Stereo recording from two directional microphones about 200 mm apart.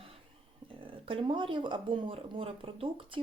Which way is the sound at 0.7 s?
25° right (ahead or behind).